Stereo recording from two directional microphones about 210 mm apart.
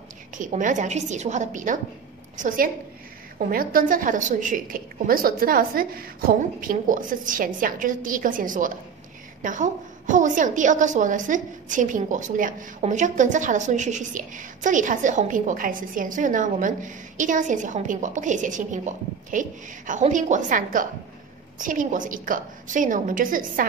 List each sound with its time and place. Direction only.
0.4 s a woman's voice: 40° right (ahead or behind)